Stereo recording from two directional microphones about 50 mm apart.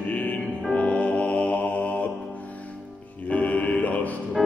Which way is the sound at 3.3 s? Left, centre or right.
Left.